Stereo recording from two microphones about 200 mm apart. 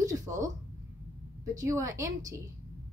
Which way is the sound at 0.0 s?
15° right (ahead or behind).